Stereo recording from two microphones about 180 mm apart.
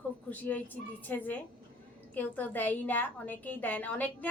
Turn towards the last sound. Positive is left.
turn(degrees=10)  # may be behind; listen again after turning